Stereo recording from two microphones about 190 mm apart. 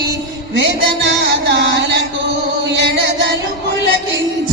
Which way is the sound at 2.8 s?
65° right (ahead or behind).